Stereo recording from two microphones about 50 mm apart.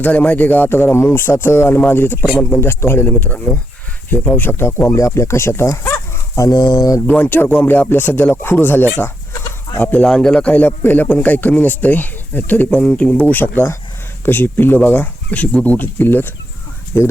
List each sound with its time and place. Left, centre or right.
0.0 s speech: left
0.9 s speech: left
2.2 s speech: left
2.6 s a man's voice: left
3.1 s speech: left
4.9 s speech: left
6.3 s speech: left
7.1 s speech: left
7.6 s speech: left
7.9 s speech: left
10.1 s a man's voice: centre
10.7 s a man's voice: left
13.3 s speech: left